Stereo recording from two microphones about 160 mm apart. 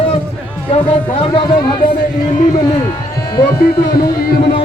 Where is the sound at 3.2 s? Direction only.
25° left (ahead or behind).